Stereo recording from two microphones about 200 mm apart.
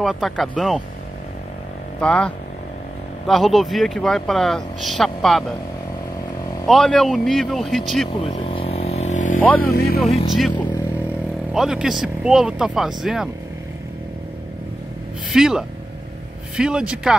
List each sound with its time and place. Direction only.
0.0 s speech: centre (ahead or behind)
2.0 s speech: 5° left (ahead or behind)
6.7 s speech: centre (ahead or behind)
8.2 s vehicle: 30° left (ahead or behind)
9.6 s speech: 50° left (ahead or behind)
10.3 s speech: centre (ahead or behind)
15.3 s speech: 5° right (ahead or behind)